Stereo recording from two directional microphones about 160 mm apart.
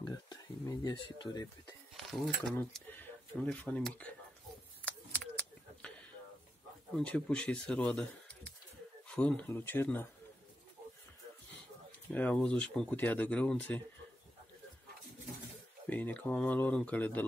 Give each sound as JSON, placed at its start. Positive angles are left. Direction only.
{"t": 0.7, "sound": "speech", "side_deg": 25}
{"t": 2.0, "sound": "a sound", "side_deg": 0}
{"t": 2.5, "sound": "speech", "side_deg": 10}
{"t": 4.8, "sound": "keys jangling", "side_deg": 10}
{"t": 7.0, "sound": "speech", "side_deg": 5}
{"t": 12.1, "sound": "speech", "side_deg": 10}
{"t": 15.9, "sound": "speech", "side_deg": 10}